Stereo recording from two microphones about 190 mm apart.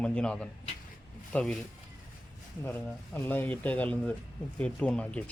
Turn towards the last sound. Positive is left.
turn(degrees=5)  # may be behind; listen again after turning